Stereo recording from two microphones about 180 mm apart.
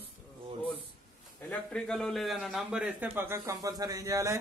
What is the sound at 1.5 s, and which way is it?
A man's voice, 5° left (ahead or behind).